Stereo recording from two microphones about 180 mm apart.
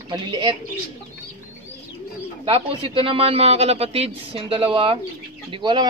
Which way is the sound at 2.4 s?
30° right (ahead or behind).